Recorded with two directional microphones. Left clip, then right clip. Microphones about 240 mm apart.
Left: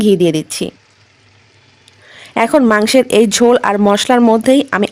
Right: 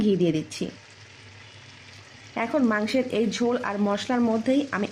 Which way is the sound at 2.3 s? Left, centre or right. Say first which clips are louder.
Left 14 dB; left.